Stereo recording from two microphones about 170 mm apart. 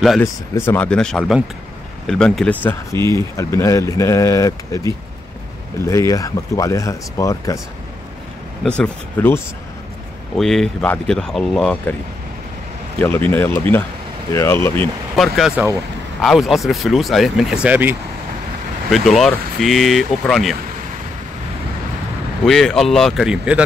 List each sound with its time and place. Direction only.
0.2 s speech: 15° left (ahead or behind)
2.6 s speech: 15° left (ahead or behind)
8.6 s speech: 5° left (ahead or behind)
13.0 s speech: 10° left (ahead or behind)
15.1 s speech: centre (ahead or behind)
18.9 s speech: centre (ahead or behind)
22.4 s speech: centre (ahead or behind)